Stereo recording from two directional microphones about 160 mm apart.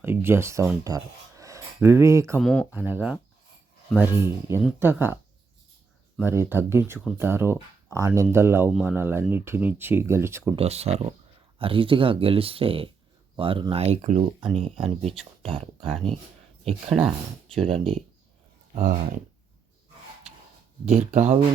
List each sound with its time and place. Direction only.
0.0 s speech: 15° right (ahead or behind)
2.4 s speech: 5° left (ahead or behind)
2.7 s speech: 10° right (ahead or behind)
6.2 s speech: 15° right (ahead or behind)
10.5 s speech: 40° right (ahead or behind)
14.4 s speech: 35° right (ahead or behind)
14.8 s speech: centre (ahead or behind)
15.4 s speech: 35° right (ahead or behind)
15.9 s speech: centre (ahead or behind)
18.8 s speech: 60° right (ahead or behind)
20.8 s speech: 45° right (ahead or behind)